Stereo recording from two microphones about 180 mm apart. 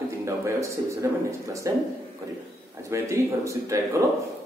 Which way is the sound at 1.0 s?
15° right (ahead or behind).